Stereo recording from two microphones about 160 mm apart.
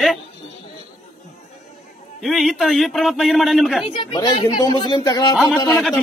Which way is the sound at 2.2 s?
Centre (ahead or behind).